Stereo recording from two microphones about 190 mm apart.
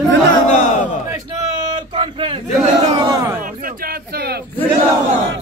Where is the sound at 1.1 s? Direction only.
20° right (ahead or behind).